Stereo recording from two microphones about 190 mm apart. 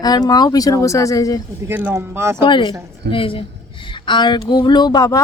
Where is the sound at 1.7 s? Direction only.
10° right (ahead or behind).